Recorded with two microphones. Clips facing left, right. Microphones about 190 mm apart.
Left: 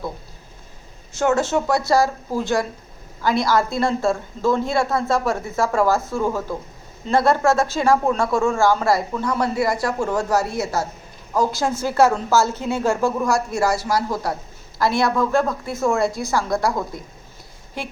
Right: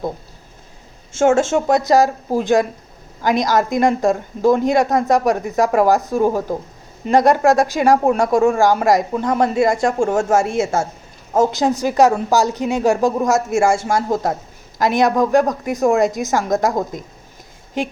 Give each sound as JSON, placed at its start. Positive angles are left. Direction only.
{"t": 1.2, "sound": "a woman's voice", "side_deg": -25}
{"t": 13.9, "sound": "a man's voice", "side_deg": -45}
{"t": 14.8, "sound": "speech", "side_deg": -20}